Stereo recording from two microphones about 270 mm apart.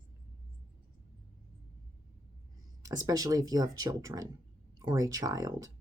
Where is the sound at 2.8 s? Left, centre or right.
Centre.